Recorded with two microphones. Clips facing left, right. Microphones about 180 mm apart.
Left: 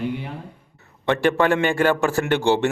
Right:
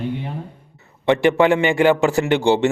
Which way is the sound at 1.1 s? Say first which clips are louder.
Right 4 dB; 15° right (ahead or behind).